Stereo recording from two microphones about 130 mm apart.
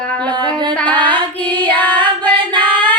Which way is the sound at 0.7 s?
10° left (ahead or behind).